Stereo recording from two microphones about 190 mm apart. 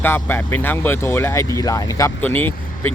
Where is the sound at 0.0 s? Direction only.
10° left (ahead or behind).